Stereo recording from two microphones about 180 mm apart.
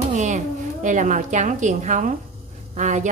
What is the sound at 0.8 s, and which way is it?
A woman's voice, 45° right (ahead or behind).